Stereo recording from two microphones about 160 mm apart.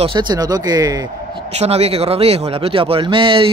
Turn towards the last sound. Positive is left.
turn(degrees=-35)  # may be behind; listen again after turning